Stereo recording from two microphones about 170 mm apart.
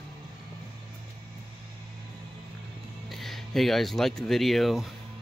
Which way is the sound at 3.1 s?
Centre (ahead or behind).